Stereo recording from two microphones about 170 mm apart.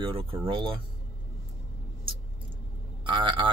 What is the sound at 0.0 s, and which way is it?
Speech, 30° right (ahead or behind).